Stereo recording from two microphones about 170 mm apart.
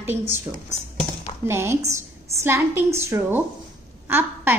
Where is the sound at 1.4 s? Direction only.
15° right (ahead or behind).